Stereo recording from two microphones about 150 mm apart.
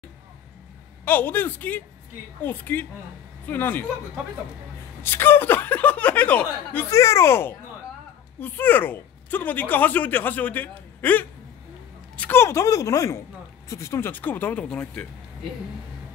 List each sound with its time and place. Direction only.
1.0 s speech: 10° left (ahead or behind)
5.0 s a woman's voice: 15° left (ahead or behind)